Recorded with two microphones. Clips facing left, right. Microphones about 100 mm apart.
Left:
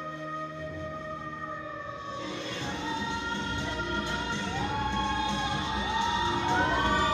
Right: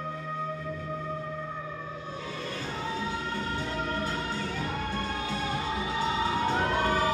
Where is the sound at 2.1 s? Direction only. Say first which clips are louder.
Left 4 dB; 25° left (ahead or behind).